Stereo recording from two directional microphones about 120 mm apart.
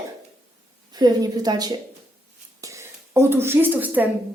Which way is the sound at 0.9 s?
35° right (ahead or behind).